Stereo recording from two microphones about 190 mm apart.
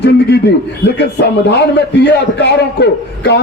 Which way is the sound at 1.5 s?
60° left (ahead or behind).